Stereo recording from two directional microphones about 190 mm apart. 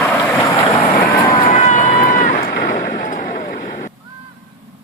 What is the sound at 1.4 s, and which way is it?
Run, 40° left (ahead or behind).